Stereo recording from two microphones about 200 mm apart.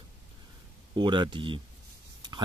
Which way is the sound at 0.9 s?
25° right (ahead or behind).